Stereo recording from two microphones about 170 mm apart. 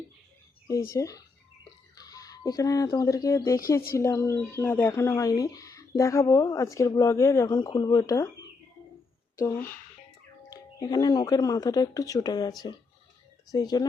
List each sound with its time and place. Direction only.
0.7 s speech: 20° left (ahead or behind)
9.3 s speech: 20° left (ahead or behind)